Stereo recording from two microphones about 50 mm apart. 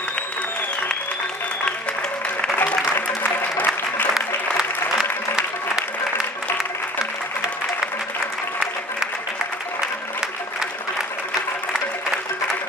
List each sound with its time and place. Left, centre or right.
2.6 s music: left
3.2 s applause: left
4.1 s applause: centre